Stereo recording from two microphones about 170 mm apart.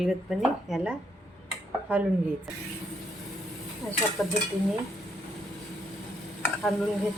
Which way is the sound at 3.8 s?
15° left (ahead or behind).